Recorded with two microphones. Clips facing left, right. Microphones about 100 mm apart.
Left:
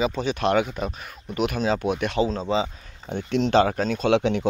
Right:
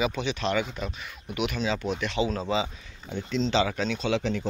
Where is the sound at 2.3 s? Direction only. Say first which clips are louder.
Left 3 dB; 30° left (ahead or behind).